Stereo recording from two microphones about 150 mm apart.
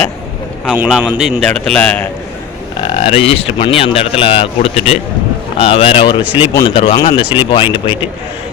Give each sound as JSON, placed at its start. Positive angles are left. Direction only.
{"t": 0.6, "sound": "a man's voice", "side_deg": -5}
{"t": 2.8, "sound": "speech", "side_deg": 35}
{"t": 6.8, "sound": "speech", "side_deg": 45}